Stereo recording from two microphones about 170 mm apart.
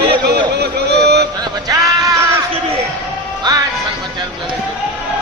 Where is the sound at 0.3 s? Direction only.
75° right (ahead or behind).